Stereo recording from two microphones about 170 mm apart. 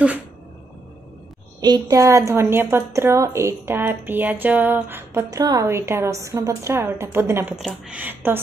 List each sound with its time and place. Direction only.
1.6 s a woman's voice: 20° right (ahead or behind)
7.5 s a woman's voice: 5° right (ahead or behind)